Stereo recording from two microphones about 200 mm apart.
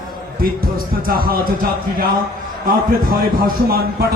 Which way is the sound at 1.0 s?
45° right (ahead or behind).